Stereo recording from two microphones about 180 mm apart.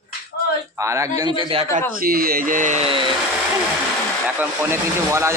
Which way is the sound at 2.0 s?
55° right (ahead or behind).